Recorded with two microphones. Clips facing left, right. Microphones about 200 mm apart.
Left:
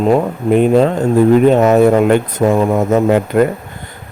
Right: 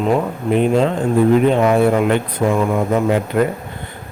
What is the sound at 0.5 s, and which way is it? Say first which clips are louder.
Speech: left 4 dB; 45° left (ahead or behind).